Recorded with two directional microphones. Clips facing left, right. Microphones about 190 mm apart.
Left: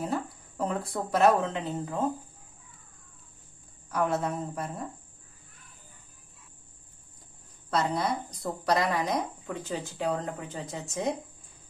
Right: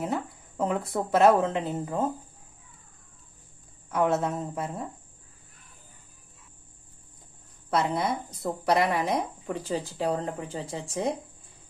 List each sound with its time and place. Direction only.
0.0 s speech: 20° right (ahead or behind)
3.9 s speech: 25° right (ahead or behind)
7.7 s speech: 25° right (ahead or behind)